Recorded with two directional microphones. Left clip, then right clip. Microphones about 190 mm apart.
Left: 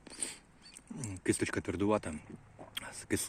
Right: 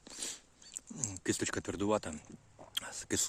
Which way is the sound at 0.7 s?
15° right (ahead or behind).